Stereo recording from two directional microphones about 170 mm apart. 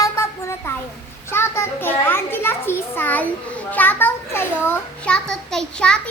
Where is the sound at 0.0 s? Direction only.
15° left (ahead or behind).